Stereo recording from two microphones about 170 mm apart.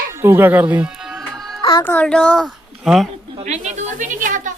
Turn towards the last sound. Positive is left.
turn(degrees=-50)  # may be behind; listen again after turning